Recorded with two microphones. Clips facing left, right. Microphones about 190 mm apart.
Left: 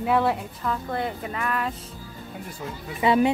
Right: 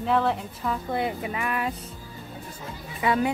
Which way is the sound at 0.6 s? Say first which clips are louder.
Right 1 dB; 5° right (ahead or behind).